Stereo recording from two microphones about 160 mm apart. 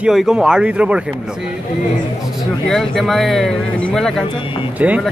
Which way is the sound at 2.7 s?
Centre (ahead or behind).